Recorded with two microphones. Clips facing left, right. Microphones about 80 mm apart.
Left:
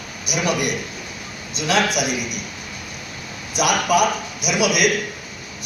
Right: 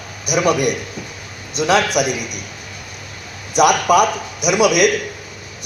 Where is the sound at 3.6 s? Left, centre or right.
Right.